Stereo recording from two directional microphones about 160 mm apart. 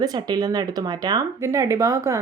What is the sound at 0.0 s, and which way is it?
A woman's voice, 25° right (ahead or behind).